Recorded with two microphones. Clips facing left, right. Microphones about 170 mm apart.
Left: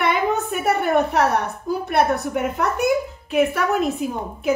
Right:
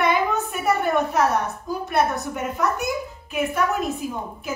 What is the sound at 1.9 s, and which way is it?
A woman's voice, 60° left (ahead or behind).